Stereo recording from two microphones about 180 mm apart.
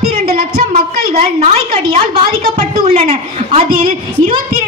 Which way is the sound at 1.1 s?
35° right (ahead or behind).